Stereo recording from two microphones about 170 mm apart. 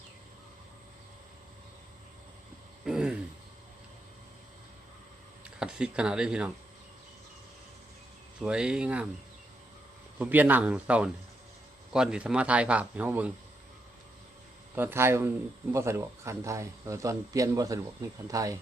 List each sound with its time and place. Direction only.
2.8 s a sound: 5° right (ahead or behind)
5.5 s speech: 5° right (ahead or behind)
8.4 s speech: 5° right (ahead or behind)
10.2 s a man's voice: 10° right (ahead or behind)
14.8 s a man's voice: 15° right (ahead or behind)